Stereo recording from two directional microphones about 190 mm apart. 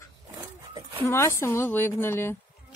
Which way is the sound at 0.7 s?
20° right (ahead or behind).